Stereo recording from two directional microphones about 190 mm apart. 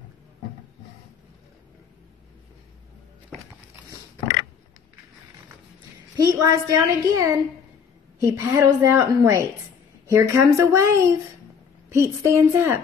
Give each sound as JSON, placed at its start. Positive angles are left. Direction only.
{"t": 6.1, "sound": "a woman's voice", "side_deg": -20}